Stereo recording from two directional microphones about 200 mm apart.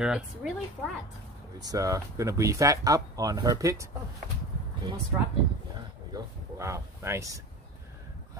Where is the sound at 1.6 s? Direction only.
15° right (ahead or behind).